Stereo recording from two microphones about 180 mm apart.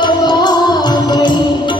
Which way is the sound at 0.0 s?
25° left (ahead or behind).